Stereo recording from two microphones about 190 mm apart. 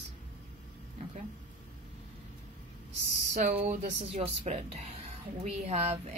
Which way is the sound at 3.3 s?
40° right (ahead or behind).